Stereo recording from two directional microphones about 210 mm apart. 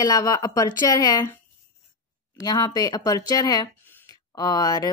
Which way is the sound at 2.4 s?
20° left (ahead or behind).